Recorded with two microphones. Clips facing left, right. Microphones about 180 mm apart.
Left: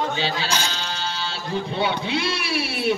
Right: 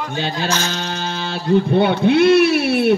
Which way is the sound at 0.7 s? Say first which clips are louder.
Right 5 dB; 55° right (ahead or behind).